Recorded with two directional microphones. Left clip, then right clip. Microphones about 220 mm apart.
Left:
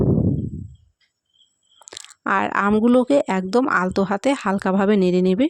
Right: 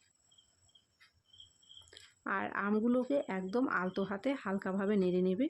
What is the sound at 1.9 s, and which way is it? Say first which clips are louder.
Speech: left 16 dB; 45° left (ahead or behind).